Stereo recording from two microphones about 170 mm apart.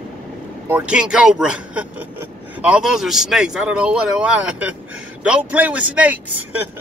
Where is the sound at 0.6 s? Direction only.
10° right (ahead or behind).